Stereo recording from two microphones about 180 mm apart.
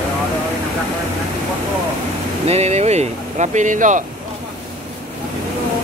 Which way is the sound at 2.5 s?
35° right (ahead or behind).